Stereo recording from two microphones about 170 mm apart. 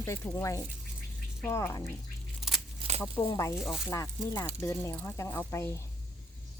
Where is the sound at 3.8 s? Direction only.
20° left (ahead or behind).